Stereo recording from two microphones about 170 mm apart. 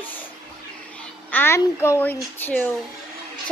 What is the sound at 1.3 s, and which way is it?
A child's voice, 10° left (ahead or behind).